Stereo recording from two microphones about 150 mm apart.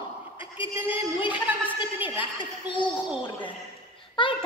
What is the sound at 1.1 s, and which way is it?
Speech, 35° left (ahead or behind).